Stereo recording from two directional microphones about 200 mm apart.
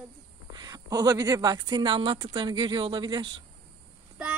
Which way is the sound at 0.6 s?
20° right (ahead or behind).